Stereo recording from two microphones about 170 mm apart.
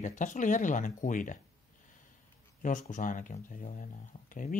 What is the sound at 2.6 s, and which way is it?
Speech, 50° left (ahead or behind).